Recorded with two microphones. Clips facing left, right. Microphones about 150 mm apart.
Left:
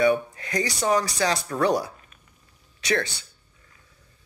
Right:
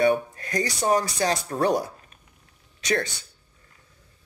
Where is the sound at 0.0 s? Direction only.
40° right (ahead or behind).